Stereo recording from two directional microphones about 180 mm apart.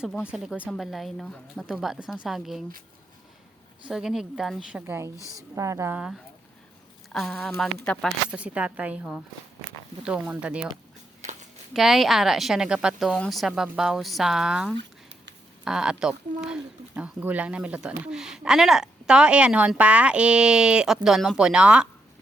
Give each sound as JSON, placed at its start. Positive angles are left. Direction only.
{"t": 0.3, "sound": "speech", "side_deg": -5}
{"t": 3.8, "sound": "speech", "side_deg": -5}
{"t": 4.9, "sound": "speech", "side_deg": -15}
{"t": 11.7, "sound": "speech", "side_deg": 0}
{"t": 14.8, "sound": "a sound", "side_deg": -75}
{"t": 15.6, "sound": "speech", "side_deg": -5}